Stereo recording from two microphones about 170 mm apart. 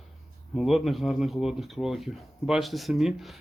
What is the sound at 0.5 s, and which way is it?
Speech, centre (ahead or behind).